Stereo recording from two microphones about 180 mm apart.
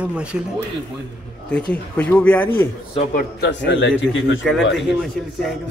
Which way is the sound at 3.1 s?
70° left (ahead or behind).